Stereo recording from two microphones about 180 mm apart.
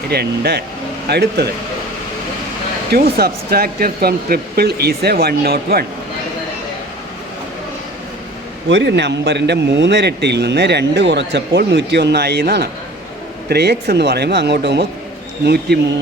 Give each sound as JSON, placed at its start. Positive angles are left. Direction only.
{"t": 0.1, "sound": "speech", "side_deg": -65}
{"t": 2.9, "sound": "speech", "side_deg": -60}
{"t": 8.7, "sound": "speech", "side_deg": -75}